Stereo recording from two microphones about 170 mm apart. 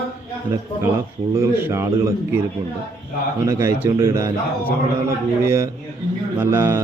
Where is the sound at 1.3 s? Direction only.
15° right (ahead or behind).